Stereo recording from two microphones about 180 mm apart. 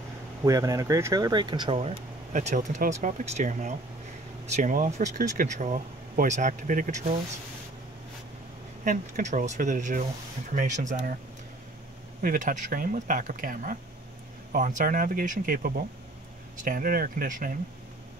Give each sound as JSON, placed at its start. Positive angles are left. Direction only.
{"t": 0.4, "sound": "speech", "side_deg": -20}
{"t": 8.8, "sound": "speech", "side_deg": -45}
{"t": 12.2, "sound": "speech", "side_deg": -50}